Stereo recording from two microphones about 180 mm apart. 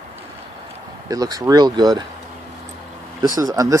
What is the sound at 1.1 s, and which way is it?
Speech, 20° right (ahead or behind).